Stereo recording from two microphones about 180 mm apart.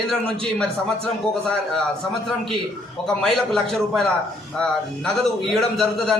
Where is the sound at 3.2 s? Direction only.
Centre (ahead or behind).